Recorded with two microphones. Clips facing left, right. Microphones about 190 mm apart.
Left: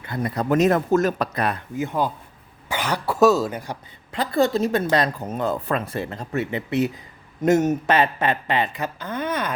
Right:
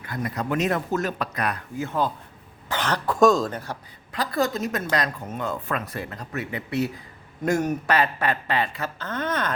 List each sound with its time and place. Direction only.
0.0 s speech: 30° left (ahead or behind); by 3.8 s 10° left (ahead or behind)
4.1 s speech: 25° left (ahead or behind)